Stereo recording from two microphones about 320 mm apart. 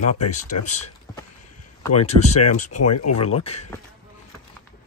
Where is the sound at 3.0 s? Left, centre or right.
Left.